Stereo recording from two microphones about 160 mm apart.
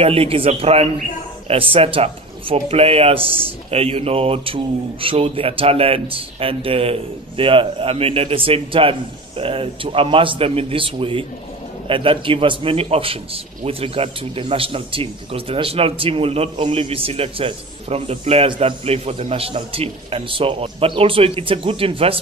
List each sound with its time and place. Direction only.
0.0 s a man's voice: 35° right (ahead or behind)